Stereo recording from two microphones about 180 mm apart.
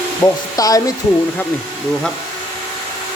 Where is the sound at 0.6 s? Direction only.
20° left (ahead or behind).